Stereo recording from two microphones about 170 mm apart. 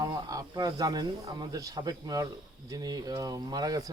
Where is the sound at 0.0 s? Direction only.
20° right (ahead or behind).